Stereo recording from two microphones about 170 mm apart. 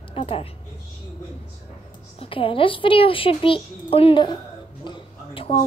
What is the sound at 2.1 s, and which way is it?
A woman's voice, 30° left (ahead or behind).